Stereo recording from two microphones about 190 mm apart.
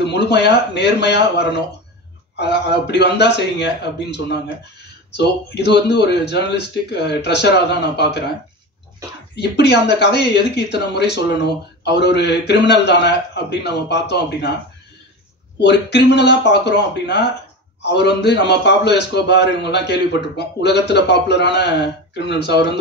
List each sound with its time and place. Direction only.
0.1 s speech: 65° left (ahead or behind)
2.3 s speech: 65° left (ahead or behind)
9.3 s speech: 65° left (ahead or behind)
15.6 s speech: 65° left (ahead or behind)